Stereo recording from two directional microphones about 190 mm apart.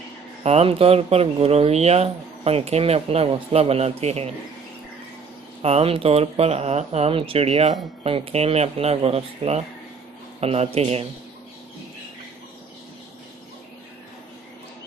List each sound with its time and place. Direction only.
0.4 s speech: 30° right (ahead or behind)
5.6 s speech: 30° right (ahead or behind)